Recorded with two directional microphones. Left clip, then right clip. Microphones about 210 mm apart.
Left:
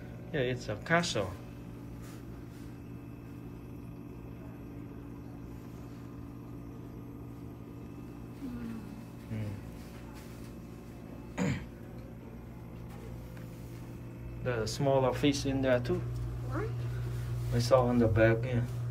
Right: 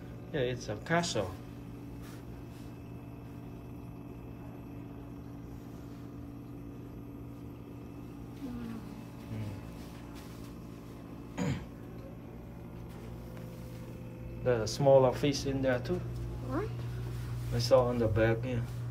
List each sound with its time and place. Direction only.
0.3 s a man's voice: 10° right (ahead or behind)
11.3 s throat clearing: 10° right (ahead or behind)
14.4 s a man's voice: 20° right (ahead or behind)
17.6 s a man's voice: 5° right (ahead or behind)